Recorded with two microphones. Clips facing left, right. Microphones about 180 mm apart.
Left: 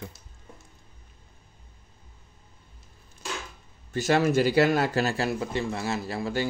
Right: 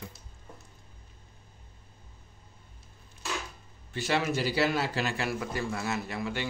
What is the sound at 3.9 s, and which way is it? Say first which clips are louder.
Speech: left 6 dB; 45° left (ahead or behind).